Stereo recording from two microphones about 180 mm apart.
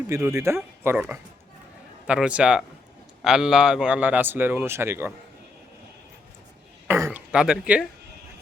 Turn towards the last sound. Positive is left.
turn(degrees=-5)  # may be behind; listen again after turning